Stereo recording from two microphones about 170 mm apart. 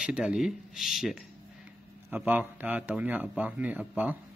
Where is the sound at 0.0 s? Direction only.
5° right (ahead or behind).